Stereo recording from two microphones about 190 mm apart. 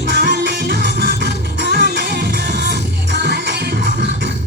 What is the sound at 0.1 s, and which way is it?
Music, 50° right (ahead or behind).